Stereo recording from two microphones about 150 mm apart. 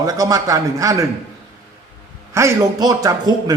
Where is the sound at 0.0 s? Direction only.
25° right (ahead or behind).